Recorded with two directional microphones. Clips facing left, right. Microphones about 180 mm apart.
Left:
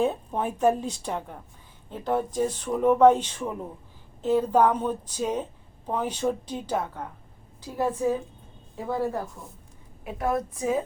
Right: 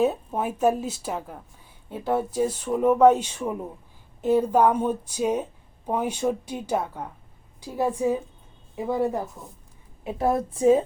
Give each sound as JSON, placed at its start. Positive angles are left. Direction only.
{"t": 0.0, "sound": "a woman's voice", "side_deg": -5}